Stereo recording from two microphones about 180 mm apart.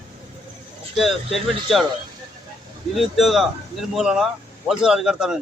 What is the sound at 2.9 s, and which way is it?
Speech, centre (ahead or behind).